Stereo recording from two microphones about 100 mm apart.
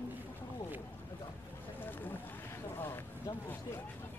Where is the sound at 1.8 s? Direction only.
20° left (ahead or behind).